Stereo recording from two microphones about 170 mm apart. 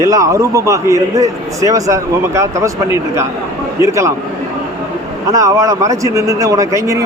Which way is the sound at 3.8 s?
15° right (ahead or behind).